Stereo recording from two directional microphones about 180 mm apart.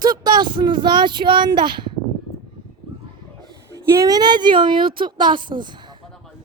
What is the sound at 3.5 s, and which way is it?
Speech, 20° right (ahead or behind).